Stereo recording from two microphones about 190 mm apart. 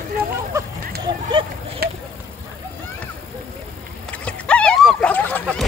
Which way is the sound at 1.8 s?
55° right (ahead or behind).